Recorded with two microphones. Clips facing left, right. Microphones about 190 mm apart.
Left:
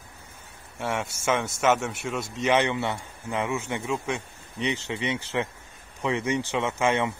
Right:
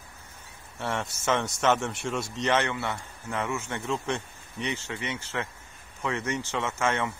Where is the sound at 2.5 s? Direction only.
15° left (ahead or behind).